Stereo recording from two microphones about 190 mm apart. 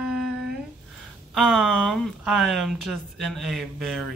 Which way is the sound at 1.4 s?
Centre (ahead or behind).